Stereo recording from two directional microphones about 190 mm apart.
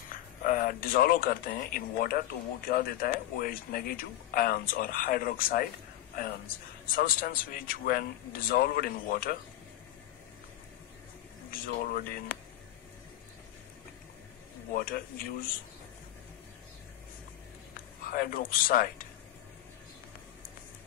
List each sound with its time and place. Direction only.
0.1 s speech: 45° left (ahead or behind)
6.9 s speech: 50° left (ahead or behind)
11.5 s speech: 50° left (ahead or behind)
14.7 s speech: 50° left (ahead or behind)
18.0 s speech: 50° left (ahead or behind)